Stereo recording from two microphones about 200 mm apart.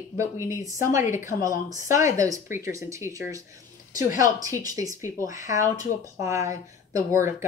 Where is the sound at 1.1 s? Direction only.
40° left (ahead or behind).